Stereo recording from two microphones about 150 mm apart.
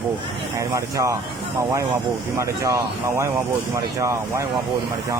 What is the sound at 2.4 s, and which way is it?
Speech, 20° right (ahead or behind).